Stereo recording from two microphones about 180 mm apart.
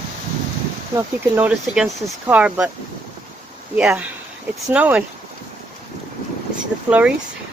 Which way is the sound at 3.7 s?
5° right (ahead or behind).